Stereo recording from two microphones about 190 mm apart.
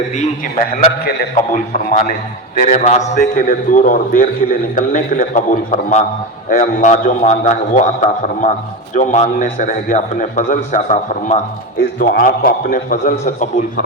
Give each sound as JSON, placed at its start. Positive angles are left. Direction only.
{"t": 0.1, "sound": "a man's voice", "side_deg": 35}
{"t": 11.8, "sound": "a man's voice", "side_deg": 50}